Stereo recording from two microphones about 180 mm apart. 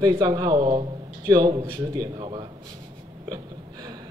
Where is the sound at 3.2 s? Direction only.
20° right (ahead or behind).